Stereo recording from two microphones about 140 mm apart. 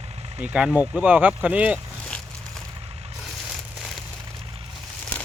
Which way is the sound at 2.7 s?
45° right (ahead or behind).